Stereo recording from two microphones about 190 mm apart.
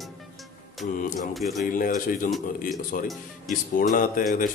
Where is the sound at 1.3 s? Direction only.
Centre (ahead or behind).